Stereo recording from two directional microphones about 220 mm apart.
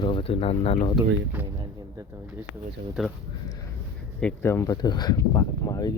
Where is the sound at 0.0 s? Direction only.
25° left (ahead or behind).